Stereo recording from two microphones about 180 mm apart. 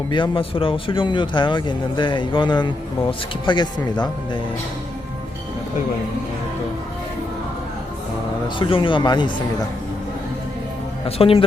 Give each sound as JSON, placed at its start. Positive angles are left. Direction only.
{"t": 0.1, "sound": "speech", "side_deg": 30}
{"t": 8.4, "sound": "speech", "side_deg": 25}
{"t": 11.2, "sound": "speech", "side_deg": 30}